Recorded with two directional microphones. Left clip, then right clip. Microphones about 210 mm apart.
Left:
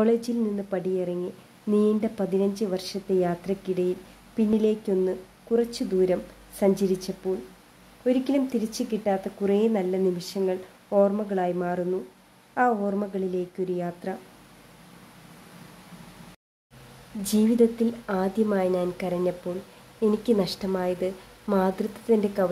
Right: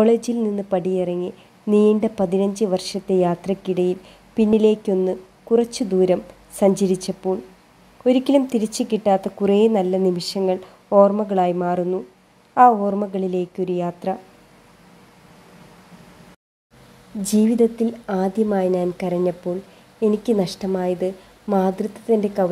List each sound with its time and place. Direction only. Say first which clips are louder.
0.0 s a woman's voice: right 6 dB; 20° right (ahead or behind)
17.2 s a woman's voice: right 4 dB; 20° right (ahead or behind)